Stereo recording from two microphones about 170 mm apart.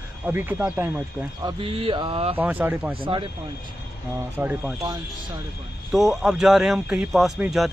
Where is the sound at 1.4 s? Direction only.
30° right (ahead or behind).